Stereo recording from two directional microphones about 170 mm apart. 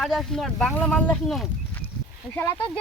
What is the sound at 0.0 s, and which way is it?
Speech, centre (ahead or behind).